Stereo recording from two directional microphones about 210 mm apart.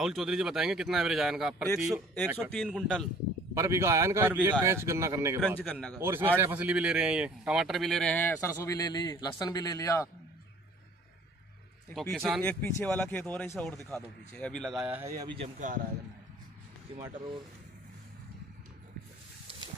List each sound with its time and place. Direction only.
0.0 s speech: centre (ahead or behind)
3.5 s a man's voice: 15° right (ahead or behind)
5.4 s speech: 5° left (ahead or behind)
5.9 s a man's voice: 10° right (ahead or behind); by 10.0 s 15° left (ahead or behind)
11.9 s speech: centre (ahead or behind); by 15.7 s 25° right (ahead or behind)